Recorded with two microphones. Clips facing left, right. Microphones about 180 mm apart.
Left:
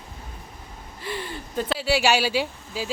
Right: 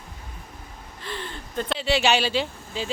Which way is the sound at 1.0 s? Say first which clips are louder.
Left 3 dB; 10° left (ahead or behind).